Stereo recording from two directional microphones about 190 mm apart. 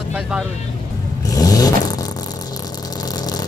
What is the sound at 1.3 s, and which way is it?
Vehicle, 20° left (ahead or behind).